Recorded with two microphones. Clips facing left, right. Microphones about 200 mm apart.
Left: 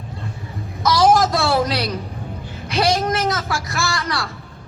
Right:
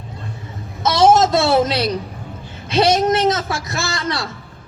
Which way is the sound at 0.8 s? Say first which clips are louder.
Right 2 dB; 25° right (ahead or behind).